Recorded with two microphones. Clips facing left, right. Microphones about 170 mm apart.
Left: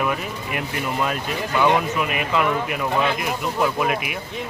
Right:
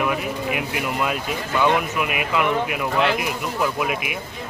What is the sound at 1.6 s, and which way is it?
Speech, 15° left (ahead or behind).